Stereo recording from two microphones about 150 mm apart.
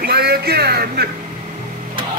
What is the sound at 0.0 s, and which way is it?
Music, 90° right.